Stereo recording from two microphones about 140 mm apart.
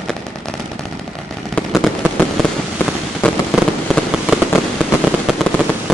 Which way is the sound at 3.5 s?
5° right (ahead or behind).